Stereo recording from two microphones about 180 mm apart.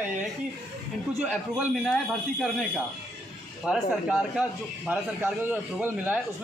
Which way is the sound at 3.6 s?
5° right (ahead or behind).